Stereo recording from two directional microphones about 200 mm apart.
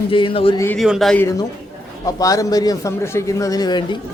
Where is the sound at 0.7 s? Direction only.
Centre (ahead or behind).